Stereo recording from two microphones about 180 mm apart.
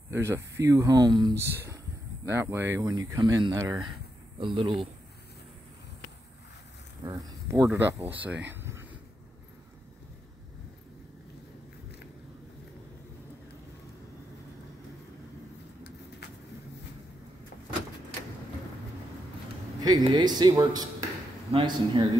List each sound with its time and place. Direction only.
0.1 s speech: 15° right (ahead or behind)
2.8 s speech: 20° right (ahead or behind)
4.4 s speech: 30° right (ahead or behind)
7.1 s speech: 20° right (ahead or behind)
20.1 s speech: 25° right (ahead or behind)